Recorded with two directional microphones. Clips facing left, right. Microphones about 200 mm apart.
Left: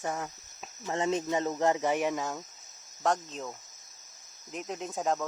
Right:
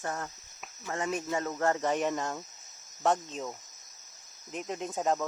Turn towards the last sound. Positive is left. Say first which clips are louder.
# right 1 dB
turn(degrees=0)  # may be behind; listen again after turning